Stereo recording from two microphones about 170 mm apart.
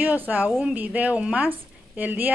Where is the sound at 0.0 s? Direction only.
10° right (ahead or behind).